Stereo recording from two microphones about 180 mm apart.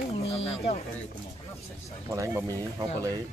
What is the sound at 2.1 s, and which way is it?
Speech, 15° right (ahead or behind).